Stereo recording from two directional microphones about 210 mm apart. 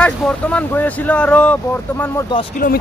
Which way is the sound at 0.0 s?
5° left (ahead or behind).